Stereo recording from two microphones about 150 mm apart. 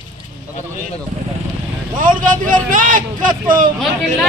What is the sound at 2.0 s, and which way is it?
Speech, 65° right (ahead or behind).